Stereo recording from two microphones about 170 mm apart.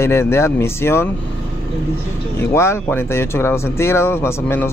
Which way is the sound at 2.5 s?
15° left (ahead or behind).